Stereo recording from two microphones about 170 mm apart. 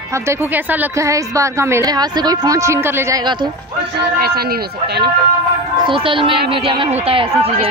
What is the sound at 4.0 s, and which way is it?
Speech, 70° right (ahead or behind).